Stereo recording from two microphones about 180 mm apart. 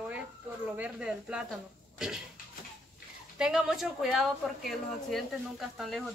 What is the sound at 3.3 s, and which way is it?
Speech, 5° right (ahead or behind).